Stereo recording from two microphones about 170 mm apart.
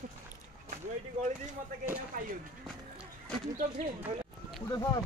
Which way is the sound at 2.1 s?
55° right (ahead or behind).